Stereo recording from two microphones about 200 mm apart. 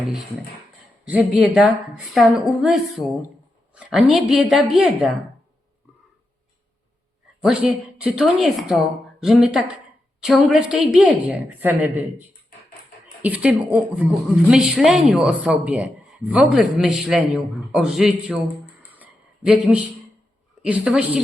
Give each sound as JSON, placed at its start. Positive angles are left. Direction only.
{"t": 1.0, "sound": "a woman's voice", "side_deg": -5}
{"t": 7.4, "sound": "a woman's voice", "side_deg": -5}
{"t": 13.2, "sound": "a woman's voice", "side_deg": -5}
{"t": 19.7, "sound": "a woman's voice", "side_deg": -5}